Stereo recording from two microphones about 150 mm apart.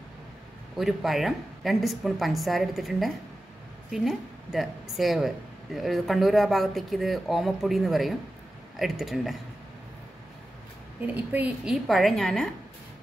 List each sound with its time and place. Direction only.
0.7 s speech: centre (ahead or behind)
11.0 s speech: 10° right (ahead or behind)